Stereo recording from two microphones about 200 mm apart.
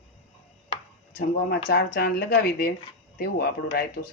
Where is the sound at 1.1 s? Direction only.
50° left (ahead or behind).